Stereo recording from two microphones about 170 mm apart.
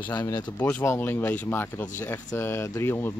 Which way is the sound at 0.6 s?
10° left (ahead or behind).